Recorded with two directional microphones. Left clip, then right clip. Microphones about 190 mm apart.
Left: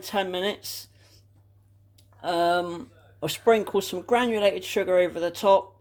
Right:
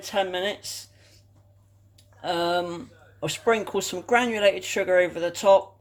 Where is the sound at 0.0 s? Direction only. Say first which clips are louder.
Right 1 dB; 25° left (ahead or behind).